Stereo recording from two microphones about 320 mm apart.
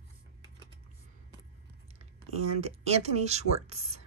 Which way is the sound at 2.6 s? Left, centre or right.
Centre.